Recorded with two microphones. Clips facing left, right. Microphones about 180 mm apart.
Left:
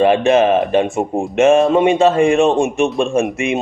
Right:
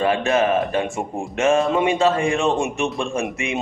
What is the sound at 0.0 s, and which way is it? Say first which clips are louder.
A man's voice: left 7 dB; 25° left (ahead or behind).